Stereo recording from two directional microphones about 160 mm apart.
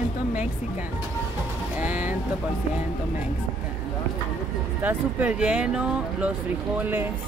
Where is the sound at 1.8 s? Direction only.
10° right (ahead or behind).